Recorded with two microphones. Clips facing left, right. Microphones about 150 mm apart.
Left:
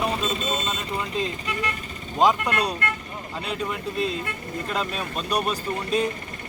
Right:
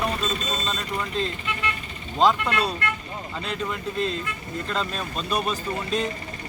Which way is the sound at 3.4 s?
5° left (ahead or behind).